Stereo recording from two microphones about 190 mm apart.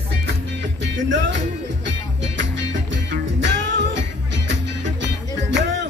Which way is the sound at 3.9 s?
65° right (ahead or behind).